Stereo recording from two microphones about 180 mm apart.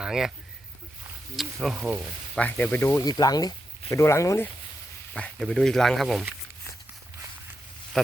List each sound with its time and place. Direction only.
0.0 s speech: 5° right (ahead or behind)
1.4 s speech: 5° right (ahead or behind)
2.4 s speech: 10° left (ahead or behind)
5.1 s speech: 5° left (ahead or behind)
7.9 s a sound: centre (ahead or behind)